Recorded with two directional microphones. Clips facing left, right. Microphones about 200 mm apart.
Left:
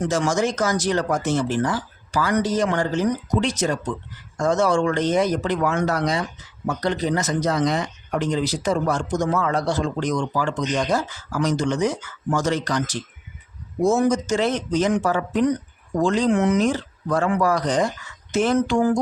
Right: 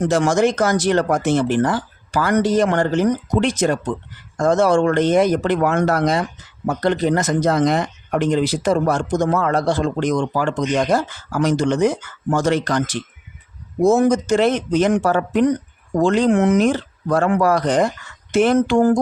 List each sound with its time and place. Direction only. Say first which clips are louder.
0.0 s speech: right 5 dB; 55° right (ahead or behind)